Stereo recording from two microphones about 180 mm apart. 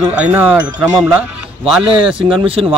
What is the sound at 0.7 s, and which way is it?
Speech, 20° right (ahead or behind).